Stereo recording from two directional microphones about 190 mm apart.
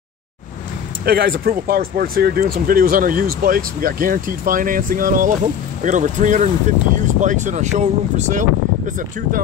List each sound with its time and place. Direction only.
1.0 s speech: 50° right (ahead or behind)